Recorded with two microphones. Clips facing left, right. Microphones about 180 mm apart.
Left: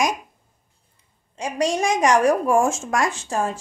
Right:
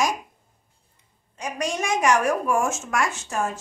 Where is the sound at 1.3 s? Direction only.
30° left (ahead or behind).